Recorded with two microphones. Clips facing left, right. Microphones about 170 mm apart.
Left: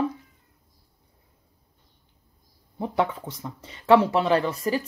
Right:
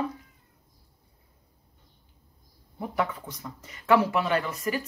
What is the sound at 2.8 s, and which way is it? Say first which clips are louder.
Speech: left 4 dB; 25° left (ahead or behind).